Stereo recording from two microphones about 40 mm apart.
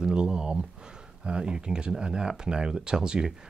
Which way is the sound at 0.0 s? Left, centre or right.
Centre.